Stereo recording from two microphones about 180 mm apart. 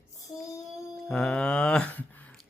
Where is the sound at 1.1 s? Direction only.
5° left (ahead or behind).